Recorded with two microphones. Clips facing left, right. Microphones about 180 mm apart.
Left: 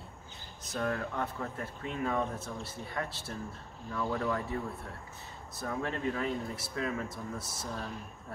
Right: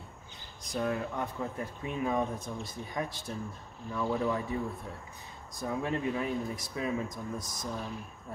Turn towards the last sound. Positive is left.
turn(degrees=-15)  # may be behind; listen again after turning